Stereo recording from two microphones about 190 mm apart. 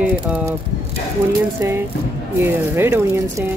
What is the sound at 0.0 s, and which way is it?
Speech, 10° right (ahead or behind).